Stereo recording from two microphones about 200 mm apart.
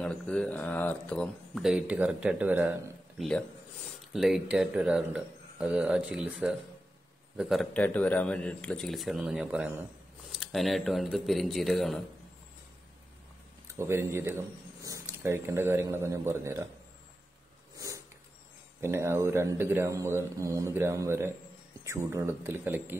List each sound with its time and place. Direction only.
0.0 s speech: 5° left (ahead or behind)
13.7 s speech: 10° right (ahead or behind)
17.7 s sniff: 15° right (ahead or behind)
18.8 s speech: 10° right (ahead or behind)